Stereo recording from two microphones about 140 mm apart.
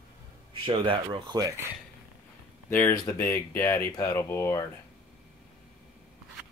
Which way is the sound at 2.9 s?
20° left (ahead or behind).